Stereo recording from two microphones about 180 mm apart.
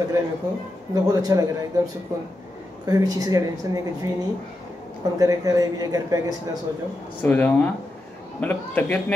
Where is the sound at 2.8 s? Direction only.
20° right (ahead or behind).